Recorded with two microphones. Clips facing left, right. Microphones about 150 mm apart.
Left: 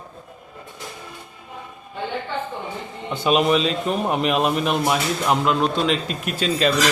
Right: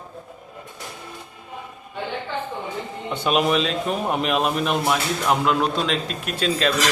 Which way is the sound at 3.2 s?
Centre (ahead or behind).